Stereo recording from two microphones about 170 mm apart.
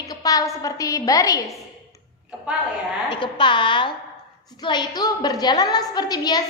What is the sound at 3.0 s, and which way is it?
A woman's voice, 30° left (ahead or behind).